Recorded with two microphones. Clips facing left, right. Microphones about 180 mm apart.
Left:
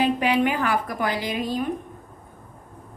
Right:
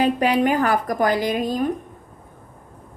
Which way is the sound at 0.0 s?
40° right (ahead or behind).